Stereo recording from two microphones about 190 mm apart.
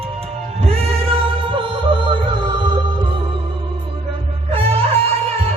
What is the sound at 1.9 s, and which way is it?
Music, 25° right (ahead or behind).